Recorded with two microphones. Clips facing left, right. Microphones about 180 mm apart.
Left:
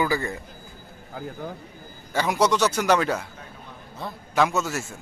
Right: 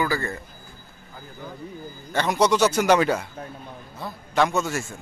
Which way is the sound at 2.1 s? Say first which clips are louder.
Right 1 dB; 5° left (ahead or behind).